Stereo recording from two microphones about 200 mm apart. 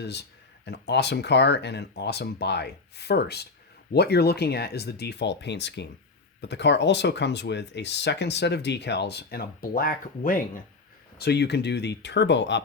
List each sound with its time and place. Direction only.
0.0 s speech: 55° left (ahead or behind)
11.2 s speech: 55° left (ahead or behind)